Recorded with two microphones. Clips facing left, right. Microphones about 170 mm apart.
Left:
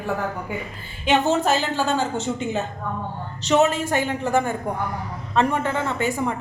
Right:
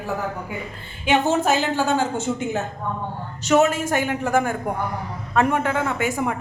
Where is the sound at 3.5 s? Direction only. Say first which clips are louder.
Right 1 dB; 5° right (ahead or behind).